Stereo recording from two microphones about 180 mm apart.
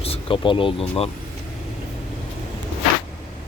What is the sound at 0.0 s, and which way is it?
Speech, 30° left (ahead or behind).